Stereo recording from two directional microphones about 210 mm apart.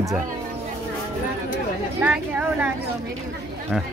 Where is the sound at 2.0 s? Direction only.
5° right (ahead or behind).